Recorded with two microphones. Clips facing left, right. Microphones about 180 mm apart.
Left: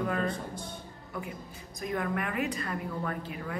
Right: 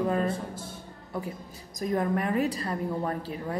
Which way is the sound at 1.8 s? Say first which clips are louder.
Right 5 dB; 35° right (ahead or behind).